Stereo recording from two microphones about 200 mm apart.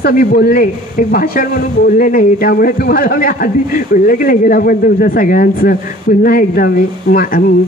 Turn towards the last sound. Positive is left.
turn(degrees=45)  # may be behind; listen again after turning